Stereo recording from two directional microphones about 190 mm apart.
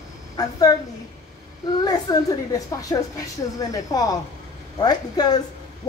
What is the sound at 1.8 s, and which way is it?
A woman's voice, 20° left (ahead or behind).